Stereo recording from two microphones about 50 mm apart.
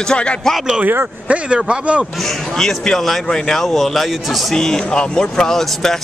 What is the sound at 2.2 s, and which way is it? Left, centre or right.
Speech, centre.